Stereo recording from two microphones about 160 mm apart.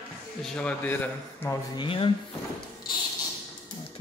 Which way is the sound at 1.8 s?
35° left (ahead or behind).